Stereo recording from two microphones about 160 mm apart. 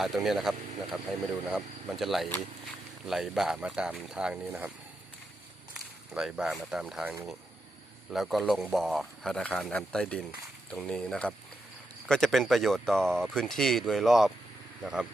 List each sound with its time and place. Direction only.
0.0 s speech: centre (ahead or behind)
5.7 s speech: 5° right (ahead or behind)